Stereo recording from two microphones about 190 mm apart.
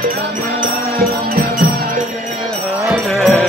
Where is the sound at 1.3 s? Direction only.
50° right (ahead or behind).